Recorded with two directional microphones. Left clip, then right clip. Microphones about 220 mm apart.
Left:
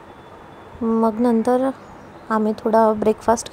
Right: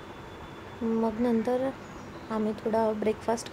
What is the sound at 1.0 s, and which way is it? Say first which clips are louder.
A woman's voice: left 10 dB; 30° left (ahead or behind).